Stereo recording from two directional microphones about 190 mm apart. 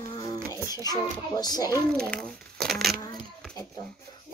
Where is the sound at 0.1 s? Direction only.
20° left (ahead or behind).